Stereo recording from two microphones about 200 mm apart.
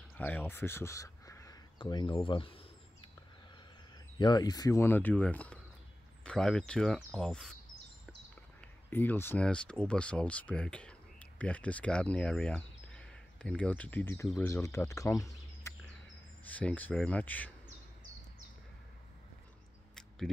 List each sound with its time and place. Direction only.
0.1 s crow: 10° left (ahead or behind); by 3.1 s 25° left (ahead or behind)
4.2 s speech: 20° left (ahead or behind); by 7.5 s centre (ahead or behind)
8.5 s speech: 10° left (ahead or behind)